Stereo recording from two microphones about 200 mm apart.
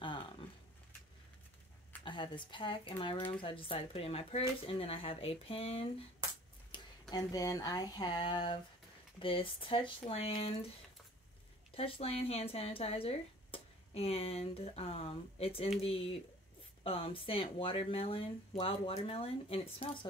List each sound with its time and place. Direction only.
2.0 s speech: 25° left (ahead or behind)
11.7 s speech: 30° left (ahead or behind)